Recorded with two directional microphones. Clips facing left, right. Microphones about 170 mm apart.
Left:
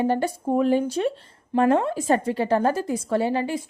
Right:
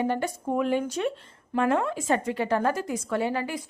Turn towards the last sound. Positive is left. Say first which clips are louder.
# left 4 dB
turn(degrees=30)  # may be behind; listen again after turning